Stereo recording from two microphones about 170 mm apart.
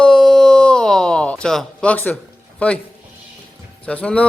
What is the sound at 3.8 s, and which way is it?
Speech, 10° left (ahead or behind).